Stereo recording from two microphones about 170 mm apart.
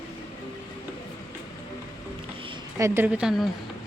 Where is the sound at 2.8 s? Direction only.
15° right (ahead or behind).